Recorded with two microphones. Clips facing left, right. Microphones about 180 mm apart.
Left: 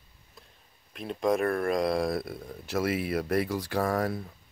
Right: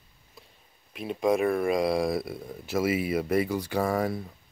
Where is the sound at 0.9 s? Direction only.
5° right (ahead or behind).